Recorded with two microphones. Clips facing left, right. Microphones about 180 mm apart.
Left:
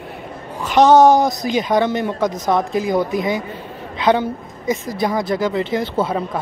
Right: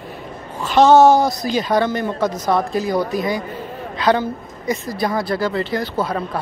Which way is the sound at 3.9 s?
20° left (ahead or behind).